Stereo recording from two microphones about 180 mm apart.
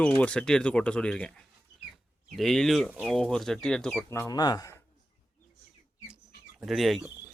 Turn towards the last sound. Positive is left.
turn(degrees=0)  # may be behind; listen again after turning